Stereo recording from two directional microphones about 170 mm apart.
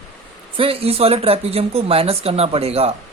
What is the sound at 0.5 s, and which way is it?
Speech, 35° right (ahead or behind).